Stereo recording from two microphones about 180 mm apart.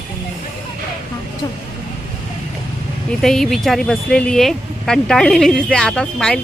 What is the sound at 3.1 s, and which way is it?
A woman's voice, 5° left (ahead or behind).